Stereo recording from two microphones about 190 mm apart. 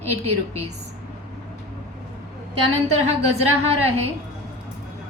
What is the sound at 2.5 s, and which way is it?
A woman's voice, 30° right (ahead or behind).